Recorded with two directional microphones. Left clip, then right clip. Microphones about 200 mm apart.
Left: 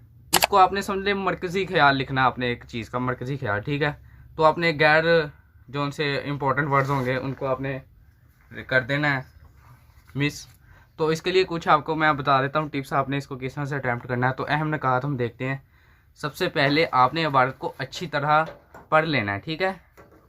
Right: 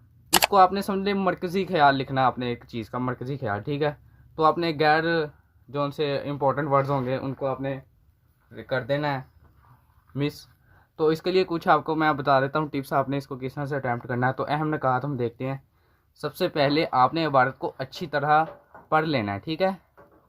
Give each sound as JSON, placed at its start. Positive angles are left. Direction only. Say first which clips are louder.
{"t": 0.3, "sound": "camera", "louder": "even", "side_deg": 0}
{"t": 0.5, "sound": "speech", "louder": "left 1 dB", "side_deg": -50}